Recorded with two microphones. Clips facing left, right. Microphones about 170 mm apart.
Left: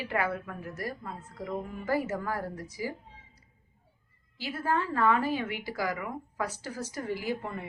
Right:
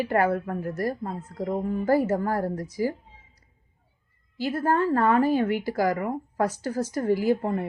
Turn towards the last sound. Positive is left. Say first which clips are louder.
# right 10 dB
turn(degrees=-45)  # may be behind; listen again after turning